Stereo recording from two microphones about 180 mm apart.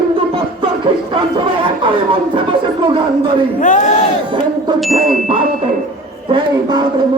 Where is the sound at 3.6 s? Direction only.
45° left (ahead or behind).